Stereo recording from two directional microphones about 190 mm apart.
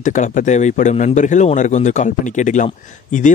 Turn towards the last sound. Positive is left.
turn(degrees=40)  # may be behind; listen again after turning